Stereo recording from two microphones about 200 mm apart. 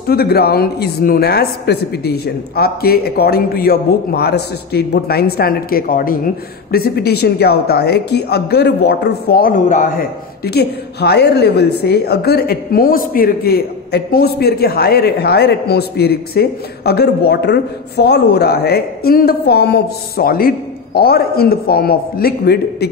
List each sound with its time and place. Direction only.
0.0 s speech: 50° left (ahead or behind)